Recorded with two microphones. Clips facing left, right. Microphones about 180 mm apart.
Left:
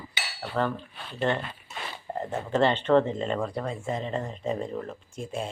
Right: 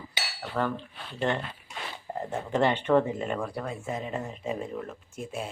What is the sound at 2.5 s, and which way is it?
Speech, 15° right (ahead or behind).